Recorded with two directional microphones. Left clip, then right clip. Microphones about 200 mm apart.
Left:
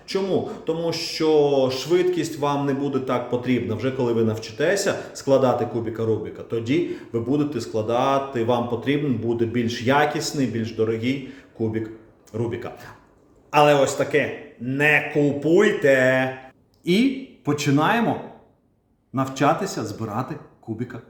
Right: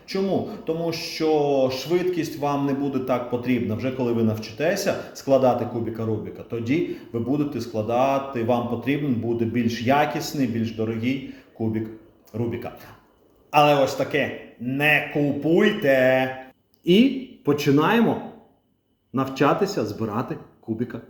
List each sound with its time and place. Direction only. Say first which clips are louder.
0.1 s a man's voice: left 1 dB; 20° left (ahead or behind)
19.1 s speech: even; 20° left (ahead or behind)